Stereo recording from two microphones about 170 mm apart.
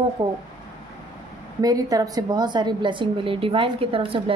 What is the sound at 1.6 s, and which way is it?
A woman's voice, 20° right (ahead or behind).